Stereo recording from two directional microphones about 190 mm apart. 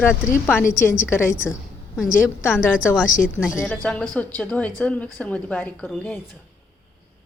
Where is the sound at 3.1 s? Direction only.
45° left (ahead or behind).